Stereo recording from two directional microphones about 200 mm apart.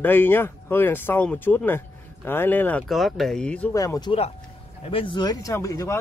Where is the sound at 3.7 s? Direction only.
15° left (ahead or behind).